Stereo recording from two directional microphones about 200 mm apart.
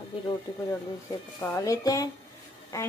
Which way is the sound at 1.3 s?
15° left (ahead or behind).